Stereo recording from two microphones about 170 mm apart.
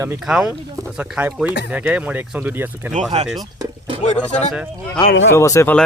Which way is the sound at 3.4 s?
25° right (ahead or behind).